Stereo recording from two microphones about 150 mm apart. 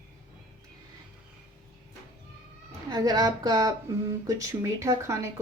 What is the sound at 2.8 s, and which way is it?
Speech, 25° right (ahead or behind).